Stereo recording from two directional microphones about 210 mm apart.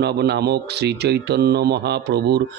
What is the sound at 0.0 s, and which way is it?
Speech, 50° right (ahead or behind).